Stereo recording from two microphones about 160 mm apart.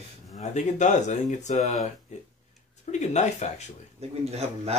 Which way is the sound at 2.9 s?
50° left (ahead or behind).